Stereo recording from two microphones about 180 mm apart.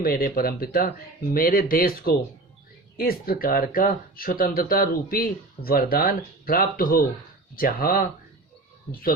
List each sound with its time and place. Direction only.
0.0 s speech: 55° left (ahead or behind)